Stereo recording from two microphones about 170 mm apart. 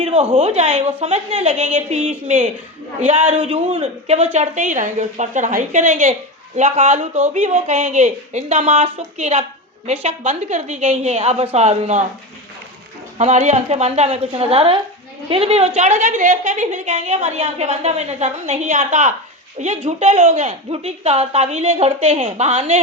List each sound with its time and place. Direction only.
0.0 s a sound: 35° right (ahead or behind)
0.3 s a woman's voice: 40° right (ahead or behind)
13.1 s a woman's voice: 45° right (ahead or behind)